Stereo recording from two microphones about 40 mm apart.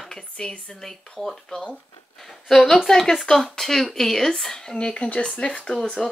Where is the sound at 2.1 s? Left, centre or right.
Centre.